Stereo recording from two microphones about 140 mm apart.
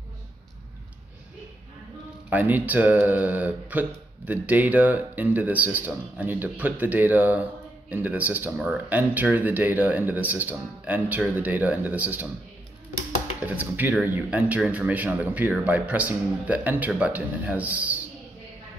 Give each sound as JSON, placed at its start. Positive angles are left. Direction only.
{"t": 2.2, "sound": "speech", "side_deg": -10}
{"t": 13.5, "sound": "speech", "side_deg": -10}